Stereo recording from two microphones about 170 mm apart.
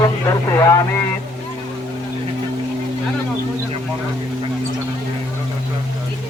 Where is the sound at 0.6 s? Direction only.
20° left (ahead or behind).